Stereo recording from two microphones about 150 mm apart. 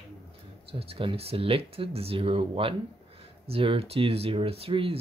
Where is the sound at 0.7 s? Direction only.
40° right (ahead or behind).